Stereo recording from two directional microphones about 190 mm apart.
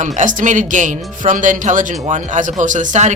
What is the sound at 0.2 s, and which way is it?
Speech, 40° right (ahead or behind).